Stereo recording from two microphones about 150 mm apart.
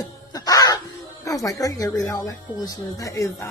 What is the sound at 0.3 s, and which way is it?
Crow, 25° left (ahead or behind).